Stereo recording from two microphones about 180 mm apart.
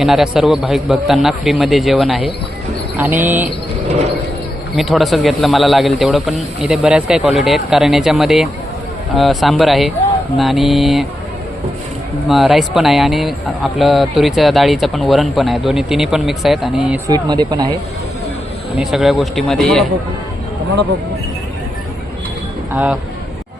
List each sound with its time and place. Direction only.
0.0 s speech: centre (ahead or behind)
3.8 s a sound: 40° right (ahead or behind)
4.8 s speech: centre (ahead or behind)
12.3 s speech: centre (ahead or behind)
17.1 s speech: 25° right (ahead or behind)
18.8 s speech: centre (ahead or behind)
22.7 s speech: 10° right (ahead or behind)